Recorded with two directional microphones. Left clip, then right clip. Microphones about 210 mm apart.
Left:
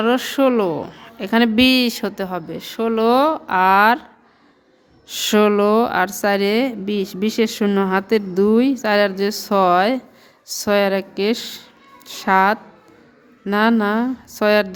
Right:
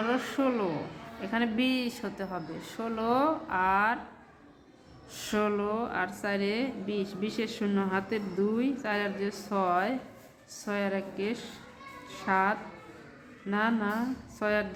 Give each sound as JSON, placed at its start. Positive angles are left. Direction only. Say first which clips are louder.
{"t": 0.0, "sound": "a woman's voice", "louder": "left 12 dB", "side_deg": 50}
{"t": 5.0, "sound": "a woman's voice", "louder": "left 14 dB", "side_deg": 50}